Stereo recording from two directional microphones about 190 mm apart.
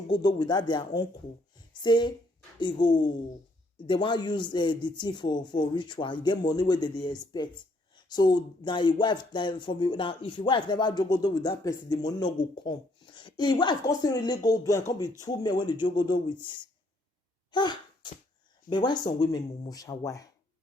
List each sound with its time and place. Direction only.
0.1 s speech: 20° left (ahead or behind)
17.5 s sneeze: 25° left (ahead or behind)
18.7 s speech: 25° left (ahead or behind)